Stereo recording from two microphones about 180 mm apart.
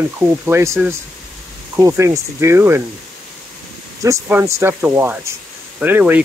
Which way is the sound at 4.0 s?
15° right (ahead or behind).